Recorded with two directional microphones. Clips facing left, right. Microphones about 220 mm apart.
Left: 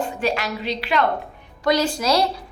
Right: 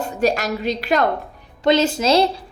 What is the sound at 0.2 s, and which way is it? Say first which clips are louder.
Speech: right 9 dB; 45° right (ahead or behind).